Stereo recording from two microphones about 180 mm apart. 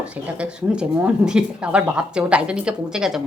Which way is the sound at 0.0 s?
5° right (ahead or behind).